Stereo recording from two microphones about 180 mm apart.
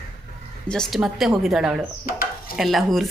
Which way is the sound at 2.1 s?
55° left (ahead or behind).